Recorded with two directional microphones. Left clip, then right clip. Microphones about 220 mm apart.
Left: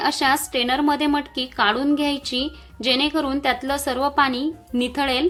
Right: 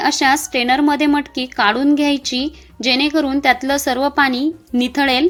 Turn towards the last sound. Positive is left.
turn(degrees=-20)  # may be behind; listen again after turning